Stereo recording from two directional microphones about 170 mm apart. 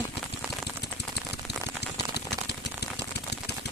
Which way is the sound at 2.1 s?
80° left.